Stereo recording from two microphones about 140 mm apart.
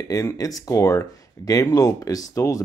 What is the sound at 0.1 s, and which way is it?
Speech, 25° left (ahead or behind).